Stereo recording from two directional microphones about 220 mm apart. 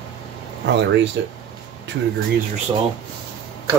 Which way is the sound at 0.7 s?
55° right (ahead or behind).